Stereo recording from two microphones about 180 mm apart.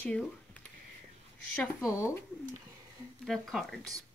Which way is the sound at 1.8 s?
15° left (ahead or behind).